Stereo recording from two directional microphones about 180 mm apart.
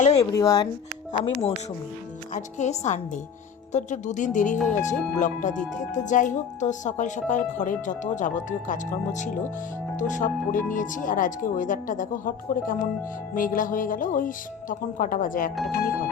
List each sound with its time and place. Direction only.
0.0 s a sound: 35° left (ahead or behind)
0.3 s speech: 20° left (ahead or behind)
1.1 s speech: 30° left (ahead or behind); by 16.0 s 55° left (ahead or behind)